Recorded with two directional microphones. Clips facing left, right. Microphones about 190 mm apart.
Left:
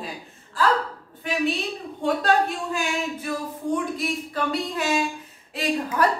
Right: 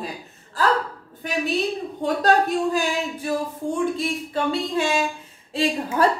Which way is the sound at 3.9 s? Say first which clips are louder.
Right 2 dB; 25° right (ahead or behind).